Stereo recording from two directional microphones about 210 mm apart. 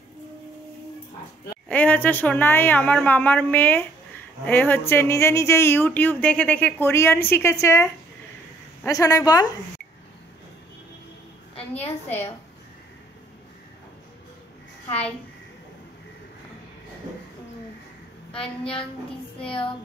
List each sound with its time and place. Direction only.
1.7 s speech: 10° left (ahead or behind)
11.8 s a woman's voice: 30° left (ahead or behind)
18.3 s a woman's voice: 25° left (ahead or behind)